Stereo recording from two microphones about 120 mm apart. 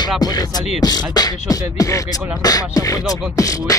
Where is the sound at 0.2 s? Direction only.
35° left (ahead or behind).